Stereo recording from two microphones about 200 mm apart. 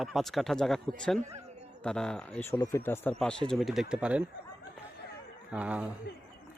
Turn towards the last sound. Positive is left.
turn(degrees=-5)  # may be behind; listen again after turning